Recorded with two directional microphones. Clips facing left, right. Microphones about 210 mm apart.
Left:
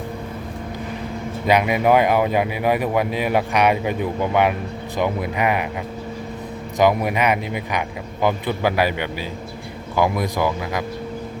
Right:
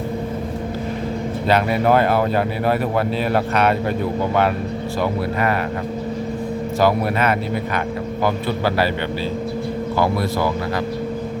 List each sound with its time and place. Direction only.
1.5 s speech: 15° left (ahead or behind)
6.7 s speech: 15° left (ahead or behind)
10.0 s speech: 15° left (ahead or behind)